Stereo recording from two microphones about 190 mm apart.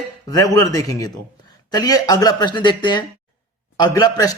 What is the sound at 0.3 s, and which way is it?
A man's voice, 20° left (ahead or behind).